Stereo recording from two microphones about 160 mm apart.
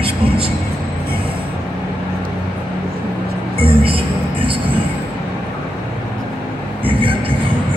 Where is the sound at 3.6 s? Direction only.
35° right (ahead or behind).